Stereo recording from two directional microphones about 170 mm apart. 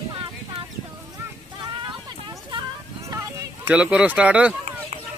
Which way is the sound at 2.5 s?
20° right (ahead or behind).